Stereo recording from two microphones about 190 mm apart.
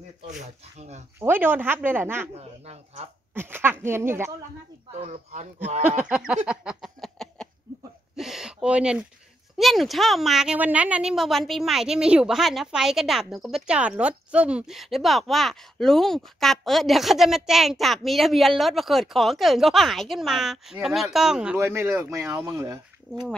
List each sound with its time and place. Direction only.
0.7 s speech: 35° right (ahead or behind)
1.2 s speech: 10° right (ahead or behind)
2.3 s speech: 35° right (ahead or behind)
3.3 s speech: 10° right (ahead or behind)
5.0 s speech: 35° right (ahead or behind)
5.9 s a sound: 5° right (ahead or behind)
8.2 s a woman's voice: centre (ahead or behind)